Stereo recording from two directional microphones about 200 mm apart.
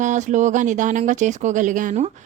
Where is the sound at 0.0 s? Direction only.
40° right (ahead or behind).